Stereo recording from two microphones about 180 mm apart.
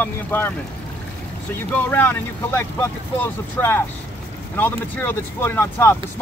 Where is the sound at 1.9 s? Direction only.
10° left (ahead or behind).